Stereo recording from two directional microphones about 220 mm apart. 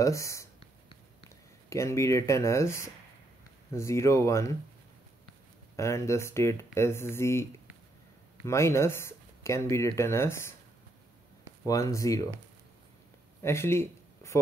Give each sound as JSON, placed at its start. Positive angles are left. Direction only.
{"t": 0.0, "sound": "a sound", "side_deg": 15}
{"t": 1.7, "sound": "speech", "side_deg": 15}
{"t": 5.8, "sound": "speech", "side_deg": 15}
{"t": 8.5, "sound": "speech", "side_deg": 10}
{"t": 11.6, "sound": "speech", "side_deg": 15}
{"t": 13.4, "sound": "a sound", "side_deg": 10}